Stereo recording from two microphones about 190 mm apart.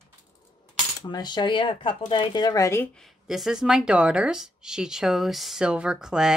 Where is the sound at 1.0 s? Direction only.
20° left (ahead or behind).